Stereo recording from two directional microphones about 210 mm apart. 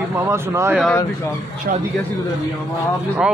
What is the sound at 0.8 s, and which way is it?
Speech, 10° left (ahead or behind).